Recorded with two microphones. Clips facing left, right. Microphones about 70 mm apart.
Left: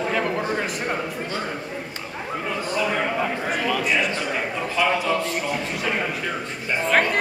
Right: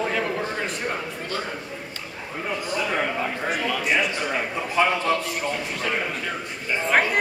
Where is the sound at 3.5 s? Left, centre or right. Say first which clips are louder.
Right 1 dB; centre.